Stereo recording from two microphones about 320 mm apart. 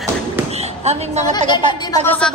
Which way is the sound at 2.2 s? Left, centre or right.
Centre.